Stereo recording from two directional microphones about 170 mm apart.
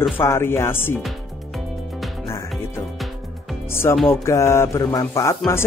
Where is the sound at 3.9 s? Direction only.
15° left (ahead or behind).